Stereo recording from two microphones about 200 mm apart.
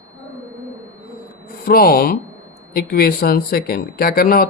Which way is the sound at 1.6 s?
50° left (ahead or behind).